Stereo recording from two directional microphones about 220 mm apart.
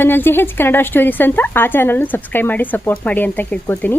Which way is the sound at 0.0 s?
10° left (ahead or behind).